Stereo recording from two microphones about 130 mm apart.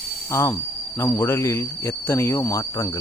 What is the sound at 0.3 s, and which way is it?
Speech, 20° left (ahead or behind).